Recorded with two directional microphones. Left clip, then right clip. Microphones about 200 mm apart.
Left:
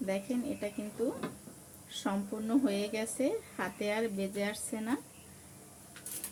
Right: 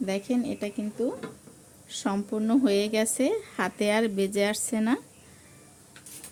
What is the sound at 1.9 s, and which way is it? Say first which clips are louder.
Speech: right 6 dB; 55° right (ahead or behind).